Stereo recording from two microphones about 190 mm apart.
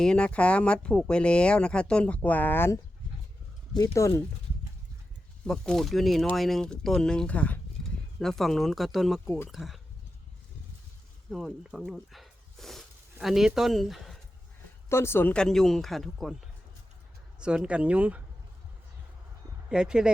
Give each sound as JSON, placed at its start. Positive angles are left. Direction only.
{"t": 0.0, "sound": "speech", "side_deg": 5}
{"t": 3.9, "sound": "speech", "side_deg": 15}
{"t": 5.5, "sound": "speech", "side_deg": 0}
{"t": 9.2, "sound": "speech", "side_deg": 10}
{"t": 9.5, "sound": "speech", "side_deg": 0}
{"t": 11.3, "sound": "speech", "side_deg": 0}
{"t": 14.8, "sound": "speech", "side_deg": 15}
{"t": 17.4, "sound": "speech", "side_deg": -5}
{"t": 19.7, "sound": "speech", "side_deg": -5}